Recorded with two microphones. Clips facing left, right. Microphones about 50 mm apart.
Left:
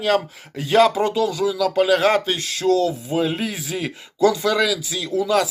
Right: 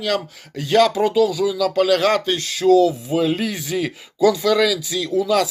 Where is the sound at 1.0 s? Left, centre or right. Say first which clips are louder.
Right 3 dB; centre.